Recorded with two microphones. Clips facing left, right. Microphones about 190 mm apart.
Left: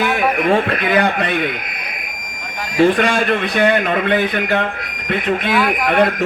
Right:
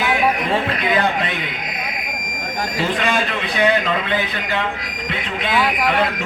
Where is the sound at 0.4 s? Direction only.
55° left (ahead or behind).